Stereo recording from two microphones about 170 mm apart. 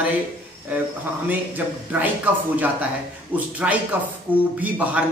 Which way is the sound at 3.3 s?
10° right (ahead or behind).